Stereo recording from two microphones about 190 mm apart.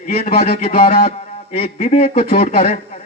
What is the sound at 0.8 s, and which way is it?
Music, 55° left (ahead or behind).